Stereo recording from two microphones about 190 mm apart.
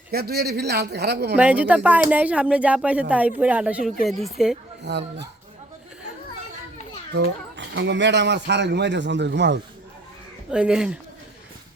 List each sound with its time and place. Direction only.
0.1 s a man's voice: 55° right (ahead or behind)
1.4 s speech: 5° right (ahead or behind)
4.9 s a man's voice: 65° right (ahead or behind)
7.1 s speech: 70° right (ahead or behind)
10.5 s speech: 5° right (ahead or behind)